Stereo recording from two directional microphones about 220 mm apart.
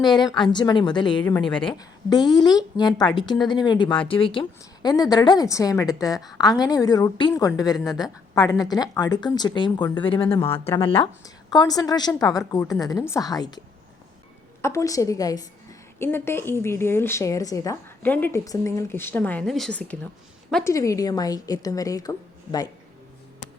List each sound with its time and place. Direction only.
0.0 s a woman's voice: 20° left (ahead or behind)
14.6 s a woman's voice: 15° left (ahead or behind)
20.7 s a woman's voice: 15° left (ahead or behind)